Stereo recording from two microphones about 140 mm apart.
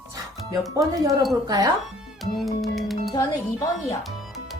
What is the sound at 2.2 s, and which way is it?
Speech, centre (ahead or behind).